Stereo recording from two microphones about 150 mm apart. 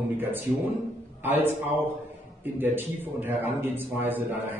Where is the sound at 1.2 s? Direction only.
15° right (ahead or behind).